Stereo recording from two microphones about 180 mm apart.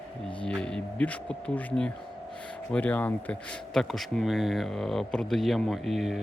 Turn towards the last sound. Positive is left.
turn(degrees=0)  # may be behind; listen again after turning